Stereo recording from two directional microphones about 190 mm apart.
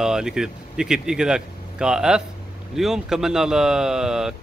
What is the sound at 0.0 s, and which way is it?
Speech, 5° right (ahead or behind).